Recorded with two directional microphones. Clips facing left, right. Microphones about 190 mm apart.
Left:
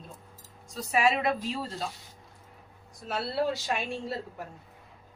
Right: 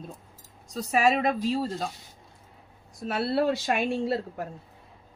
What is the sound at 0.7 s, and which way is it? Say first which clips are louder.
Speech: right 3 dB; 40° right (ahead or behind).